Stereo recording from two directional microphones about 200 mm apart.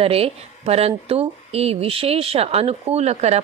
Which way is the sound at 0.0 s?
30° right (ahead or behind).